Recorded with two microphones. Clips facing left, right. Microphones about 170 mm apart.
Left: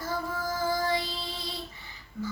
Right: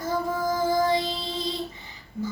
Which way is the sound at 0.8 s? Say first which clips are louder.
Right 6 dB; 20° right (ahead or behind).